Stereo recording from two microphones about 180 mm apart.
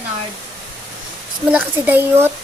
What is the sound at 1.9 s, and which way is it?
Speech, 10° right (ahead or behind).